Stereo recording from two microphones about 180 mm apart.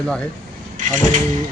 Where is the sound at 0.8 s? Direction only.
45° right (ahead or behind).